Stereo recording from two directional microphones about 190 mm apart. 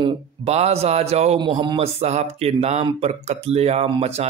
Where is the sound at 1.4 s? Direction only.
25° right (ahead or behind).